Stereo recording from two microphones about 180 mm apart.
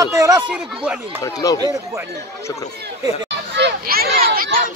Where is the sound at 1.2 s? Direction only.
20° left (ahead or behind).